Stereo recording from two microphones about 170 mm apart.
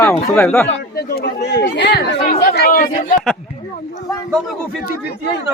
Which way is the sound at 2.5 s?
60° left (ahead or behind).